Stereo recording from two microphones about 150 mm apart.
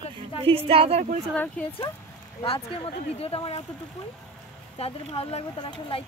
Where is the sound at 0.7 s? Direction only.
40° right (ahead or behind).